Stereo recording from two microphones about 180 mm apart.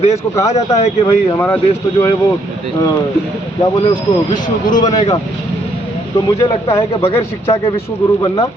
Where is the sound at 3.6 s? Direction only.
25° left (ahead or behind).